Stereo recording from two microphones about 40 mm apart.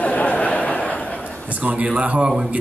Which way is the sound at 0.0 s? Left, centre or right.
Left.